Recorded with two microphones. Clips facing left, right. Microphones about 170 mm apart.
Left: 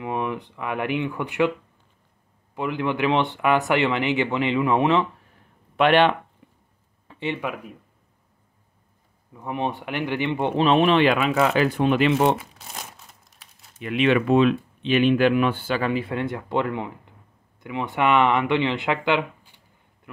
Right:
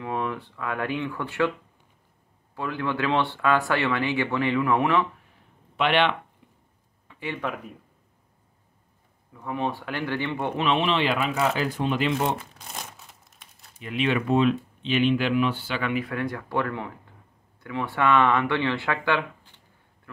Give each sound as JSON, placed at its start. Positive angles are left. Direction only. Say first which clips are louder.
{"t": 0.0, "sound": "speech", "louder": "left 2 dB", "side_deg": 15}
{"t": 2.5, "sound": "speech", "louder": "left 3 dB", "side_deg": 20}
{"t": 5.8, "sound": "speech", "louder": "left 5 dB", "side_deg": 45}
{"t": 7.1, "sound": "a sound", "louder": "left 6 dB", "side_deg": 35}
{"t": 7.4, "sound": "speech", "louder": "left 1 dB", "side_deg": 5}
{"t": 9.3, "sound": "speech", "louder": "left 1 dB", "side_deg": 20}
{"t": 10.6, "sound": "speech", "louder": "left 7 dB", "side_deg": 45}
{"t": 12.4, "sound": "crumpling", "louder": "left 1 dB", "side_deg": 5}
{"t": 13.7, "sound": "speech", "louder": "left 5 dB", "side_deg": 70}
{"t": 14.8, "sound": "speech", "louder": "left 6 dB", "side_deg": 55}